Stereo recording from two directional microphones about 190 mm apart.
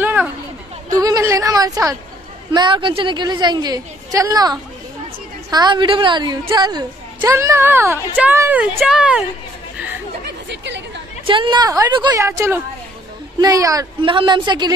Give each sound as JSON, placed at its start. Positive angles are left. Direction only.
{"t": 0.0, "sound": "a sound", "side_deg": -10}
{"t": 2.5, "sound": "a woman's voice", "side_deg": -25}
{"t": 10.5, "sound": "speech", "side_deg": -70}
{"t": 11.2, "sound": "a woman's voice", "side_deg": -25}